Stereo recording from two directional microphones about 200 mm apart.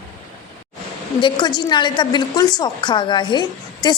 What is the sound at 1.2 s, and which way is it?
A woman's voice, 20° left (ahead or behind).